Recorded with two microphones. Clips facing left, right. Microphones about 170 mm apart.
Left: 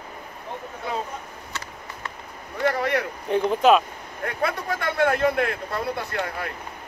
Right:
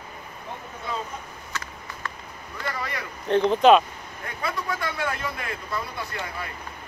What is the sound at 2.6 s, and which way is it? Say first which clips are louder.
Boat: left 10 dB; 65° left (ahead or behind).